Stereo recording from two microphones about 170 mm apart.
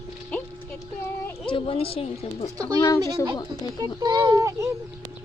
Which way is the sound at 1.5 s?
30° left (ahead or behind).